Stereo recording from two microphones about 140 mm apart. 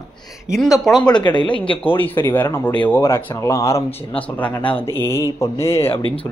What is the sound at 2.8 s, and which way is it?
Mantra, 20° left (ahead or behind).